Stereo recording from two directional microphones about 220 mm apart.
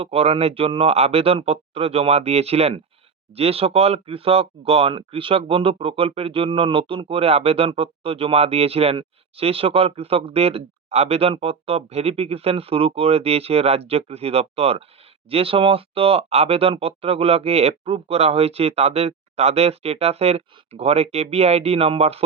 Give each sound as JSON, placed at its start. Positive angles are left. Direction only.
{"t": 0.0, "sound": "speech", "side_deg": -25}